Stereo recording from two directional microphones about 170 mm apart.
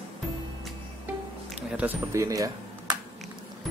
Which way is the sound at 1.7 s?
10° right (ahead or behind).